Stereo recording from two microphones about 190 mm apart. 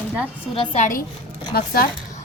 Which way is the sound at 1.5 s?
55° left (ahead or behind).